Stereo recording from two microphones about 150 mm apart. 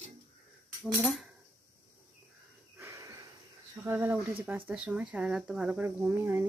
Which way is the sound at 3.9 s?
15° right (ahead or behind).